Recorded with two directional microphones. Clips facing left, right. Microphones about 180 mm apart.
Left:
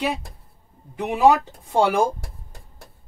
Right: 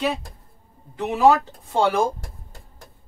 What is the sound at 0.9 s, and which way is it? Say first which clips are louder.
Speech: even; 15° left (ahead or behind).